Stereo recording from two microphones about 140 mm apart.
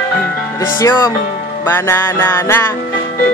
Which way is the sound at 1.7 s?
15° left (ahead or behind).